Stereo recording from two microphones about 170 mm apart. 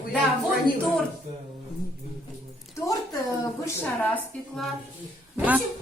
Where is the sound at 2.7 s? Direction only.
20° left (ahead or behind).